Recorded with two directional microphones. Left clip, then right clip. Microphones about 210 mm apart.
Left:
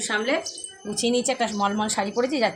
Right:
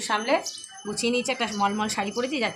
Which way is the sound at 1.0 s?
25° right (ahead or behind).